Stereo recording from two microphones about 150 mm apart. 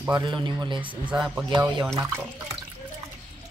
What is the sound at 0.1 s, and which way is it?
Speech, 30° right (ahead or behind).